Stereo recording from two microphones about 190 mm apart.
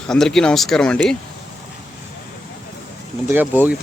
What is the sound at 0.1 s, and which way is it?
Speech, centre (ahead or behind).